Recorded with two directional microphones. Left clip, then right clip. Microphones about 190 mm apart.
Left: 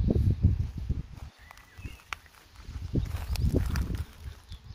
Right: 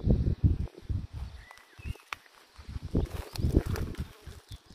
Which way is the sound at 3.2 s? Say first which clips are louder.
Left 1 dB; 50° left (ahead or behind).